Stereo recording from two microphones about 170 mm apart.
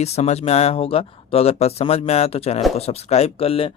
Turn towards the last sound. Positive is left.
turn(degrees=35)  # may be behind; listen again after turning